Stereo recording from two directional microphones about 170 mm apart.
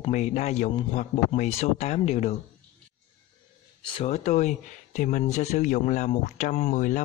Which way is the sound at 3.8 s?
35° left (ahead or behind).